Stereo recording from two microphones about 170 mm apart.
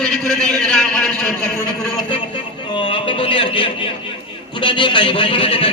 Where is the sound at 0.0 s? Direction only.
Centre (ahead or behind).